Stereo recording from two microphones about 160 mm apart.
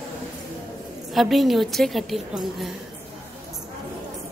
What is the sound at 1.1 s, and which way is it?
A woman's voice, centre (ahead or behind).